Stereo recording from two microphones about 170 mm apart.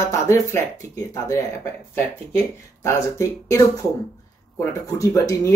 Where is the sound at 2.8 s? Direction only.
15° left (ahead or behind).